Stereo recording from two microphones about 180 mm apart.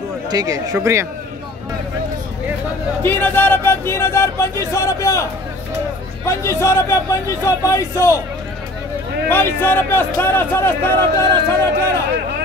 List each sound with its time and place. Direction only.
0.3 s speech: 20° right (ahead or behind)
3.0 s speech: 10° left (ahead or behind)
9.3 s speech: 10° left (ahead or behind)